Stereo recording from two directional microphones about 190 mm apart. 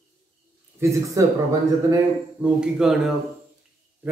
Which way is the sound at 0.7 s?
15° right (ahead or behind).